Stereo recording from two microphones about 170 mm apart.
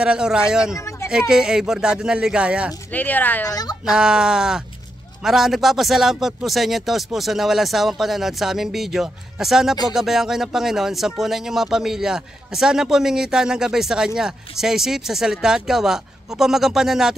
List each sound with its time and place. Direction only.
0.0 s speech: 5° right (ahead or behind)
0.7 s a sound: 15° left (ahead or behind)
1.3 s speech: 5° right (ahead or behind)
2.9 s speech: 10° left (ahead or behind)
3.8 s speech: 5° right (ahead or behind)